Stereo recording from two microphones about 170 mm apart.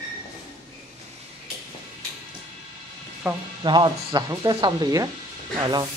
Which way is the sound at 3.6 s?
25° right (ahead or behind).